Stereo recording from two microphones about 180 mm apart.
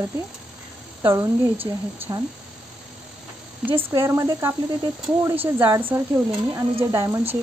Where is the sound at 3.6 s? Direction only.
10° right (ahead or behind).